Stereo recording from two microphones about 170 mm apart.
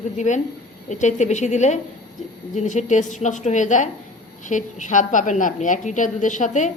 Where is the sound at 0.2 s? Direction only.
45° left (ahead or behind).